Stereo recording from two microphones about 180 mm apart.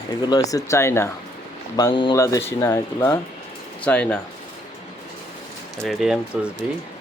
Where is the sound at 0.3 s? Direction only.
20° left (ahead or behind).